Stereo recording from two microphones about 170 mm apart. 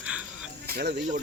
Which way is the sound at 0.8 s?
70° right (ahead or behind).